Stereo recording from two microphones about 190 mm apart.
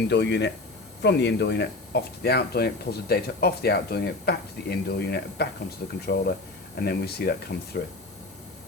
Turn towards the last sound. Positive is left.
turn(degrees=55)  # may be behind; listen again after turning